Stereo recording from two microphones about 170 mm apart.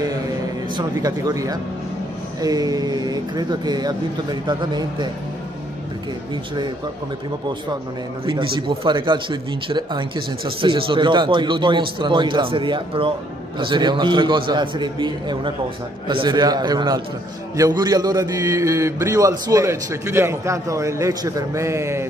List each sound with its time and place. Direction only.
0.7 s speech: 20° right (ahead or behind)
8.3 s a man's voice: 30° right (ahead or behind)